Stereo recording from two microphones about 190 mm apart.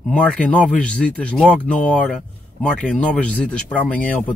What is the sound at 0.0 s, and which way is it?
Speech, 5° left (ahead or behind).